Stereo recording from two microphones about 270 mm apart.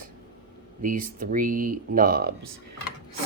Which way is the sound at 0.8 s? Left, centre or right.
Right.